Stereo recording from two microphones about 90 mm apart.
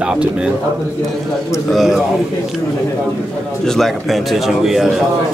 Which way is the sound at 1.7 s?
Centre (ahead or behind).